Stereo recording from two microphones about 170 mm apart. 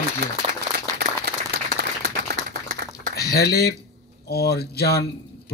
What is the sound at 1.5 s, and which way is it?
Applause, 80° right.